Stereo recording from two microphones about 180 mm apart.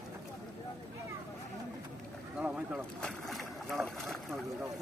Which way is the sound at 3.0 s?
Centre (ahead or behind).